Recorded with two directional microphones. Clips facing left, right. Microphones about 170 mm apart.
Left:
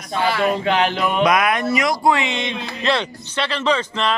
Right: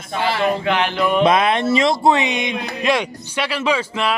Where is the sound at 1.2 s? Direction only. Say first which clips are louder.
Right 2 dB; 30° right (ahead or behind).